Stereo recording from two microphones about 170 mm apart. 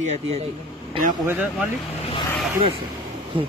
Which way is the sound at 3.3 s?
30° right (ahead or behind).